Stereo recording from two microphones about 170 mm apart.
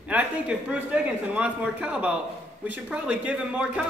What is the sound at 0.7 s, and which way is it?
A man's voice, 5° right (ahead or behind).